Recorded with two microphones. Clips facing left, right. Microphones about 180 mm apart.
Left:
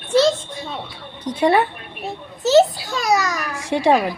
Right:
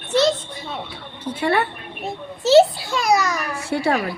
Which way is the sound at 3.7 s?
90° left.